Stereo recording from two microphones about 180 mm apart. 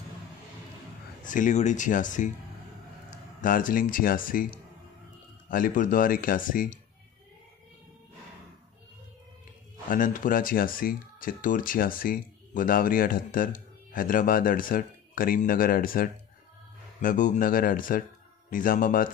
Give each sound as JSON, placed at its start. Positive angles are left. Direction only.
{"t": 1.2, "sound": "speech", "side_deg": 45}
{"t": 5.5, "sound": "speech", "side_deg": 50}
{"t": 9.8, "sound": "speech", "side_deg": 45}